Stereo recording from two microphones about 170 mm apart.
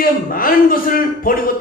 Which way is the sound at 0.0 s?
55° left (ahead or behind).